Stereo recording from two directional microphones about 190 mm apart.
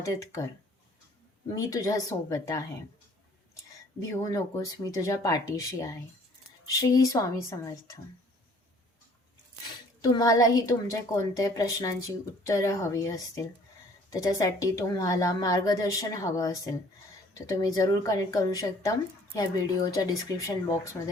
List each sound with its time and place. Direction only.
0.2 s a woman's voice: 15° left (ahead or behind)
1.5 s a woman's voice: 15° left (ahead or behind)
4.1 s a woman's voice: 15° left (ahead or behind)
10.0 s a woman's voice: 20° left (ahead or behind)